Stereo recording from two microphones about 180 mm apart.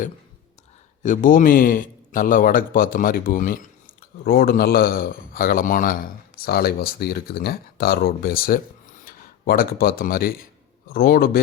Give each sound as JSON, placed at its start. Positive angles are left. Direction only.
{"t": 1.0, "sound": "a man's voice", "side_deg": 50}